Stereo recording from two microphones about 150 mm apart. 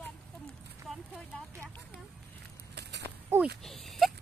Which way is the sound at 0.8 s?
Centre (ahead or behind).